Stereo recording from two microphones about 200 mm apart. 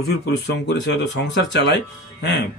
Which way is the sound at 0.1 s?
60° left (ahead or behind).